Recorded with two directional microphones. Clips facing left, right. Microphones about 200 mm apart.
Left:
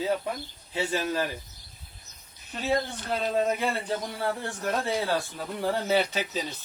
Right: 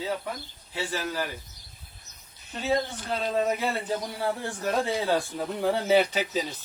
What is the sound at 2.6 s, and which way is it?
Speech, centre (ahead or behind).